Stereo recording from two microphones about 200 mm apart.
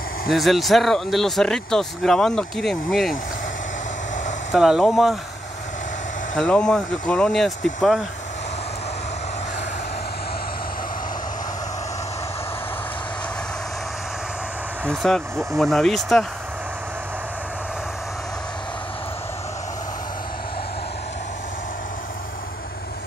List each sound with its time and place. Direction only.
0.3 s speech: centre (ahead or behind)
4.5 s speech: centre (ahead or behind)
6.3 s speech: 5° left (ahead or behind)
14.9 s speech: centre (ahead or behind)